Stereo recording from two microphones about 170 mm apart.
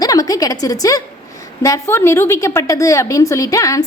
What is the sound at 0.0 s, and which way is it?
A woman's voice, 20° left (ahead or behind).